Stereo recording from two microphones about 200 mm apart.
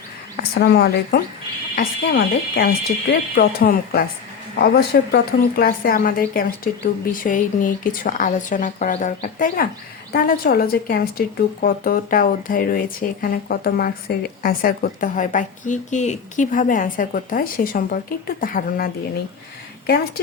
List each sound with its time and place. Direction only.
0.3 s speech: 50° left (ahead or behind)